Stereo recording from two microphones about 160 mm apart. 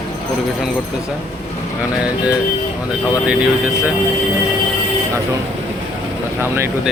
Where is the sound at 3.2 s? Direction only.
5° right (ahead or behind).